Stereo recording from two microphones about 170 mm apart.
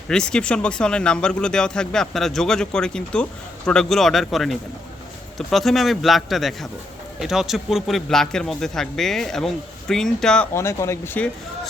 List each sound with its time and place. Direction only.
0.1 s speech: 5° left (ahead or behind)
10.5 s speech: 15° left (ahead or behind)